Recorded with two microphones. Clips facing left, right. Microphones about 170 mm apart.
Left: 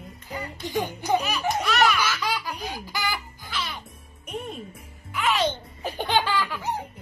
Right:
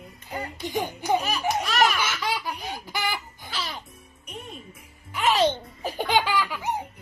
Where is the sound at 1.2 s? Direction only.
45° right (ahead or behind).